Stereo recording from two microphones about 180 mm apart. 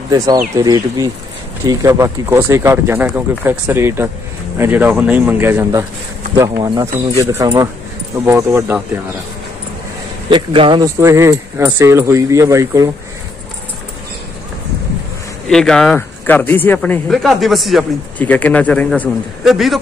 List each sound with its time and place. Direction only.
0.1 s speech: 20° right (ahead or behind)
10.3 s speech: 25° right (ahead or behind)
11.0 s speech: 15° right (ahead or behind)
15.4 s speech: 5° left (ahead or behind)